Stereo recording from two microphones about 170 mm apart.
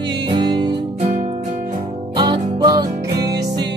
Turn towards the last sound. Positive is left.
turn(degrees=-75)  # may be behind; listen again after turning